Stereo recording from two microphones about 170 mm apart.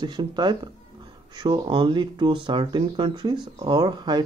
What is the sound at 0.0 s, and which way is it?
Speech, 25° right (ahead or behind).